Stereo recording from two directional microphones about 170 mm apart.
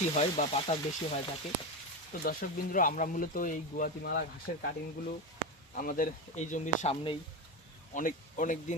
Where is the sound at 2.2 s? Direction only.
55° left (ahead or behind).